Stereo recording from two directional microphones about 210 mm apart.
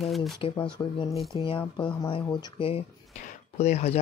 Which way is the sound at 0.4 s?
25° left (ahead or behind).